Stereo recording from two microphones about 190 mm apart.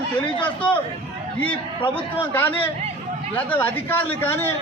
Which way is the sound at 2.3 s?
10° left (ahead or behind).